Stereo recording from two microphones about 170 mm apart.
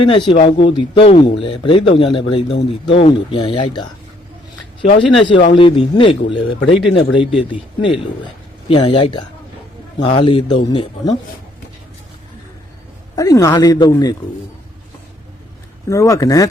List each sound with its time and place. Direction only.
0.0 s speech: 30° left (ahead or behind)
4.9 s a man's voice: 30° left (ahead or behind)
13.1 s a man's voice: 20° left (ahead or behind)
15.9 s a man's voice: 20° left (ahead or behind)